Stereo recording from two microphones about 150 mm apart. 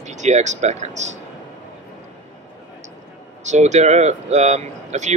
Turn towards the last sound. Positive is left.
turn(degrees=-50)  # may be behind; listen again after turning